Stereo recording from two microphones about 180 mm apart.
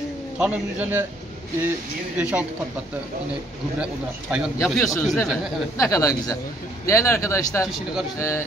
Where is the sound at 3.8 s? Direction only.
5° right (ahead or behind).